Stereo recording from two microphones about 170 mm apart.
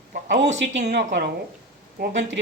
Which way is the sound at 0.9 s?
80° right.